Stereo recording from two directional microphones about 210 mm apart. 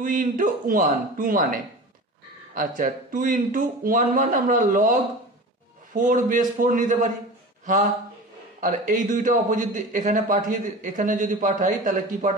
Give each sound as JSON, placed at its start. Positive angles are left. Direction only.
{"t": 0.0, "sound": "a man's voice", "side_deg": -40}
{"t": 5.9, "sound": "a man's voice", "side_deg": -40}